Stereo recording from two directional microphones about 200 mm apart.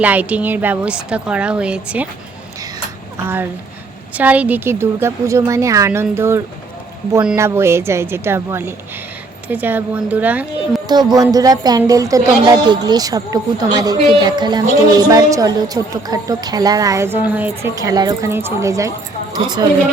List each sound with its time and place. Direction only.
0.0 s a woman's voice: 5° right (ahead or behind)
3.2 s a woman's voice: 10° right (ahead or behind)